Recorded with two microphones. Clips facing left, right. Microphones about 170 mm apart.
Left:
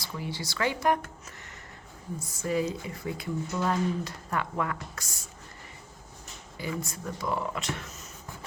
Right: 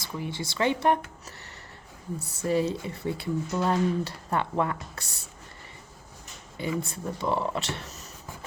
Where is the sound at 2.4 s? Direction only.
30° right (ahead or behind).